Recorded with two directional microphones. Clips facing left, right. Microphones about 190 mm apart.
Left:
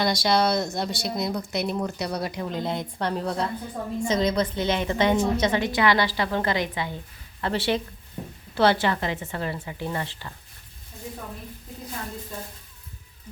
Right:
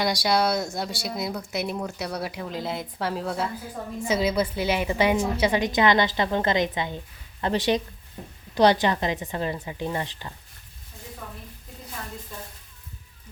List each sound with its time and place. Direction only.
0.0 s a woman's voice: 10° right (ahead or behind)